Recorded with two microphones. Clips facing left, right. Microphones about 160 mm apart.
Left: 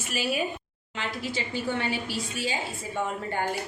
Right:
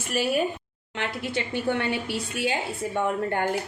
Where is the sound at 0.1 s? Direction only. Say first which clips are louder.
Right 4 dB; 60° right (ahead or behind).